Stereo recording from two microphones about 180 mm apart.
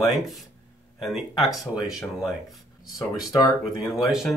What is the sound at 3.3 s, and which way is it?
Speech, 20° left (ahead or behind).